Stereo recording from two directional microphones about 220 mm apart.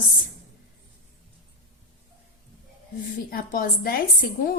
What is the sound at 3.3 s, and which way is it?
A woman's voice, 40° left (ahead or behind).